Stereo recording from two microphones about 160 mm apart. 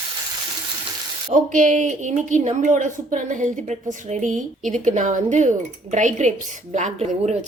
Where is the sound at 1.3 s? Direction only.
55° right (ahead or behind).